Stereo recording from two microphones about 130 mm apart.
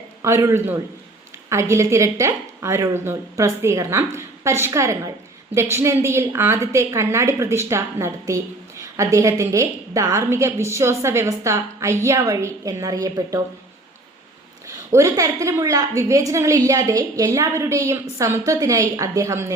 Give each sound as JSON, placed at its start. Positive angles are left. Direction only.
{"t": 0.2, "sound": "a woman's voice", "side_deg": -20}
{"t": 14.9, "sound": "a woman's voice", "side_deg": -25}